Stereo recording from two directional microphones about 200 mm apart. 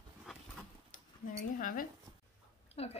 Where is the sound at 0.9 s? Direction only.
40° left (ahead or behind).